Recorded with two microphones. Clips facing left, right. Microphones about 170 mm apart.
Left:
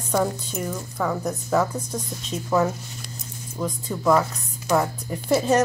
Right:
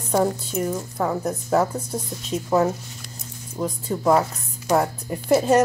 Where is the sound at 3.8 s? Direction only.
30° right (ahead or behind).